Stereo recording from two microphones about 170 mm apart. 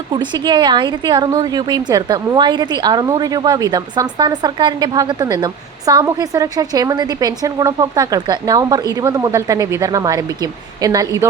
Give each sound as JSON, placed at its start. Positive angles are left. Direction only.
{"t": 0.1, "sound": "a woman's voice", "side_deg": -25}